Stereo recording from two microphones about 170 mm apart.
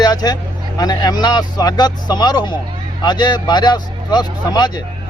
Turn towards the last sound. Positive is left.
turn(degrees=25)  # may be behind; listen again after turning